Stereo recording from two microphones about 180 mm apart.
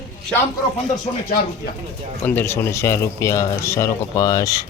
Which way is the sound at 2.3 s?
10° left (ahead or behind).